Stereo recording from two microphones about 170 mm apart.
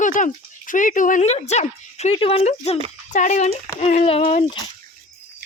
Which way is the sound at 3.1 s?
45° left (ahead or behind).